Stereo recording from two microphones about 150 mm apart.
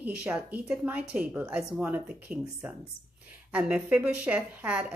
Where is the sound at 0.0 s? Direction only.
10° right (ahead or behind).